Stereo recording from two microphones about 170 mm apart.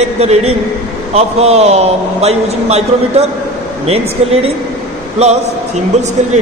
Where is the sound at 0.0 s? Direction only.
40° right (ahead or behind).